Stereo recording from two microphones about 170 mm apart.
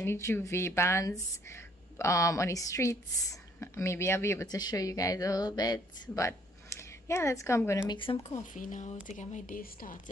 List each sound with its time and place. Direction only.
0.0 s speech: 15° left (ahead or behind)
7.9 s speech: 30° left (ahead or behind); by 9.9 s 55° left (ahead or behind)